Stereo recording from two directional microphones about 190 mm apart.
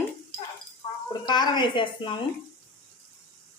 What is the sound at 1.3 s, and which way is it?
Speech, 25° left (ahead or behind).